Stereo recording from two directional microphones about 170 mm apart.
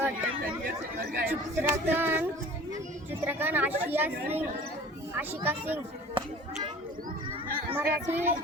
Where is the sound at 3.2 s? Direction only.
10° right (ahead or behind).